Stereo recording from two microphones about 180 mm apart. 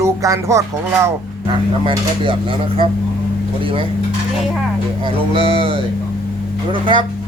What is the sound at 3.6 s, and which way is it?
Speech, 30° right (ahead or behind).